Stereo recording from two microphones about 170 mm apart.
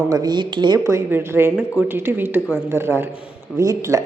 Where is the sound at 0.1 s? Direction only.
25° right (ahead or behind).